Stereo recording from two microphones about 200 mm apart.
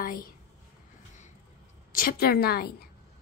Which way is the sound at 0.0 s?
45° left (ahead or behind).